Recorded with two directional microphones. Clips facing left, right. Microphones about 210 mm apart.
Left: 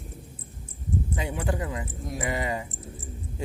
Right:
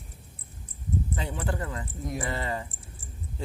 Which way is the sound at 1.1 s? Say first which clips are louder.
Left 3 dB; 10° left (ahead or behind).